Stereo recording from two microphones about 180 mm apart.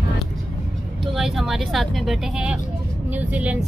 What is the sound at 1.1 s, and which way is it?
Speech, centre (ahead or behind).